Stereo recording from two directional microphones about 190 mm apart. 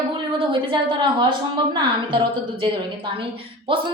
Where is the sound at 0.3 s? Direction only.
25° right (ahead or behind).